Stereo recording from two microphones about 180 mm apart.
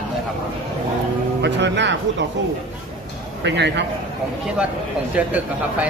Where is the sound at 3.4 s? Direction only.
75° right (ahead or behind).